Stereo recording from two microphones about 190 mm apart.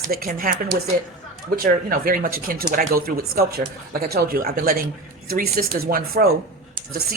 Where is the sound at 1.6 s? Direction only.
50° right (ahead or behind).